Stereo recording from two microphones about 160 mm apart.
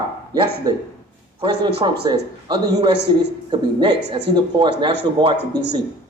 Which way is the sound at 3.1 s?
30° right (ahead or behind).